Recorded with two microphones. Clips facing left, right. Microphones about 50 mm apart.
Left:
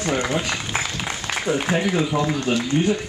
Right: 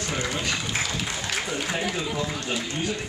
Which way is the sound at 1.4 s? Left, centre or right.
Left.